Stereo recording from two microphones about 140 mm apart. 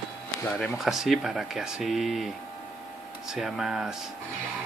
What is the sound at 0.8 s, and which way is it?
Speech, centre (ahead or behind).